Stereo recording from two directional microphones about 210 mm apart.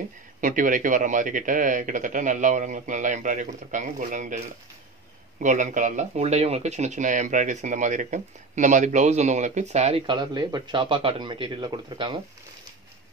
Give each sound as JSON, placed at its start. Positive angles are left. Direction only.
{"t": 0.4, "sound": "speech", "side_deg": -40}
{"t": 5.4, "sound": "speech", "side_deg": -35}